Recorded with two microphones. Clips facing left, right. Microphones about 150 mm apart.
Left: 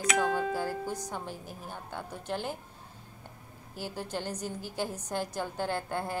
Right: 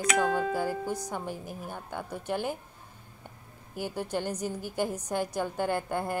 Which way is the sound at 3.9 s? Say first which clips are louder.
Right 4 dB; 10° right (ahead or behind).